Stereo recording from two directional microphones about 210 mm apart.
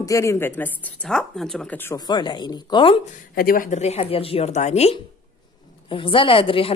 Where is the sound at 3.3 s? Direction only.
45° left (ahead or behind); by 6.7 s 25° left (ahead or behind).